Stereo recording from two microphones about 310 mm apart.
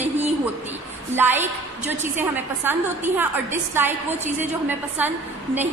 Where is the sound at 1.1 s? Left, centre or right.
Centre.